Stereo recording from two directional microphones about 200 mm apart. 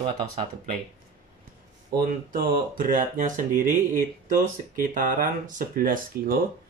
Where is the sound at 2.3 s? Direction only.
45° right (ahead or behind).